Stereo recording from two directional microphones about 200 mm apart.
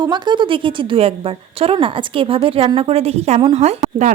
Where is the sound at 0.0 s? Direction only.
20° right (ahead or behind).